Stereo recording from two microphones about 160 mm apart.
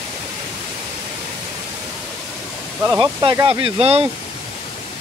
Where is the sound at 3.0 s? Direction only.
25° right (ahead or behind).